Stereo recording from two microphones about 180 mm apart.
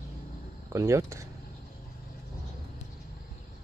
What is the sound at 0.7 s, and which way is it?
Speech, 15° right (ahead or behind).